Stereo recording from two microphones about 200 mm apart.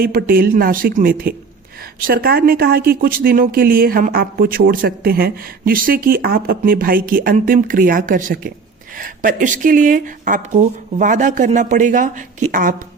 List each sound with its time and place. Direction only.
0.0 s speech: 50° right (ahead or behind)